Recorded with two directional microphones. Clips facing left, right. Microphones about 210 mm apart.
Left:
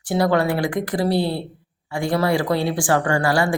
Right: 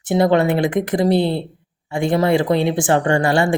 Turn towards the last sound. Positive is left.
turn(degrees=-25)  # may be behind; listen again after turning